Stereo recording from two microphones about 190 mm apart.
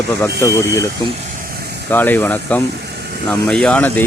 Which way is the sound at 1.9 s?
10° left (ahead or behind).